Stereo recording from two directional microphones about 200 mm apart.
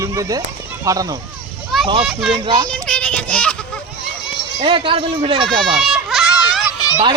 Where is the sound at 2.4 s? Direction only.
20° right (ahead or behind).